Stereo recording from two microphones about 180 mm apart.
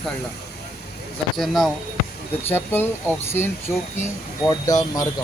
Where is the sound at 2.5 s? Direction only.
10° left (ahead or behind).